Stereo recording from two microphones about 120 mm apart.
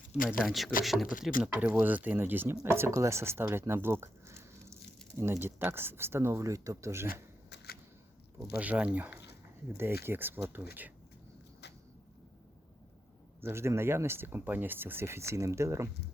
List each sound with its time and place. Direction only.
0.3 s speech: centre (ahead or behind); by 7.1 s 25° right (ahead or behind)
8.4 s speech: 10° right (ahead or behind)
13.4 s speech: 20° right (ahead or behind)